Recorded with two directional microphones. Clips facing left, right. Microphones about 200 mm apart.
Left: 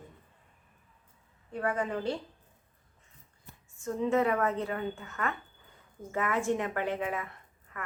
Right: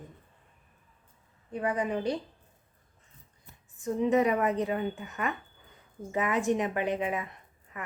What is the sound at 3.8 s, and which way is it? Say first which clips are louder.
A woman's voice: right 3 dB; 15° right (ahead or behind).